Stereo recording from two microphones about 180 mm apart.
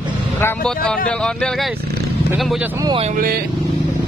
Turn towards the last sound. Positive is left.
turn(degrees=-55)  # may be behind; listen again after turning